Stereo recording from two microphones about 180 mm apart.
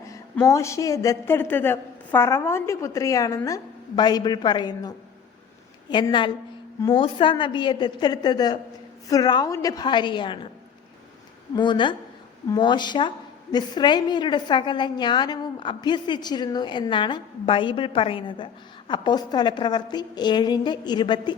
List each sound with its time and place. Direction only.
0.4 s a woman's voice: 15° left (ahead or behind)
11.5 s a woman's voice: 25° left (ahead or behind)